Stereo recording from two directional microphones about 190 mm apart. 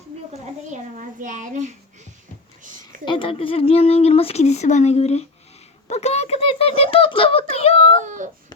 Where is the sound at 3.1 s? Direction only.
25° left (ahead or behind).